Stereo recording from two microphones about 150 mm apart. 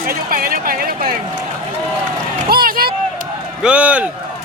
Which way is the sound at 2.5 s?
80° right.